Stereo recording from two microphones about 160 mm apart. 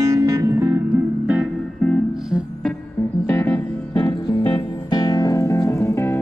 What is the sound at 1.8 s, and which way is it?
Music, 5° left (ahead or behind).